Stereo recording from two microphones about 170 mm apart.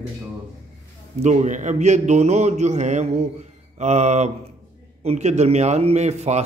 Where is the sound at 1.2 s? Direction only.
45° right (ahead or behind).